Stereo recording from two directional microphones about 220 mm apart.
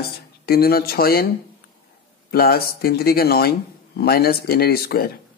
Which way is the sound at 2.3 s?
45° left (ahead or behind).